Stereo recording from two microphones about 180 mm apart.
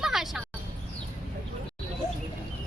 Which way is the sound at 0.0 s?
Centre (ahead or behind).